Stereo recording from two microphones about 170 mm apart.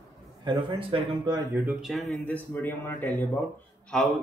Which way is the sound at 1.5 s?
5° right (ahead or behind).